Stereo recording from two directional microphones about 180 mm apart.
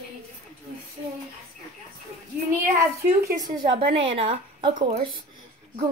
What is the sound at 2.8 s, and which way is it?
Speech, 15° right (ahead or behind).